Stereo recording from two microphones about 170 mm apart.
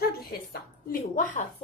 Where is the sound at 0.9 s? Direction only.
50° left (ahead or behind).